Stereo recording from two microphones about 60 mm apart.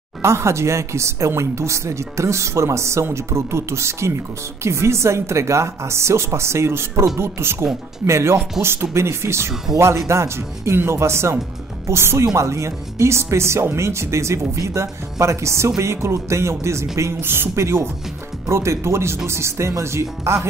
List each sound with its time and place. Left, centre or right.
0.2 s speech: right
17.2 s speech: right